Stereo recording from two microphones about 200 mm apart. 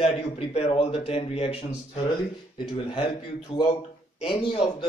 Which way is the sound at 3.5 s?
25° left (ahead or behind).